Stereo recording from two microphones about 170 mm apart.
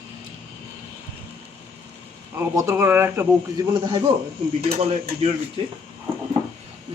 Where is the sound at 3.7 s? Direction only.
25° right (ahead or behind).